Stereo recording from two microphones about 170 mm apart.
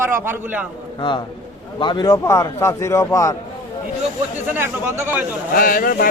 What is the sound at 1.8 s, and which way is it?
A man's voice, 25° left (ahead or behind).